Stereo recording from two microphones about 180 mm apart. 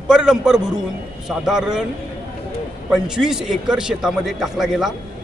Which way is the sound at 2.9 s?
5° right (ahead or behind).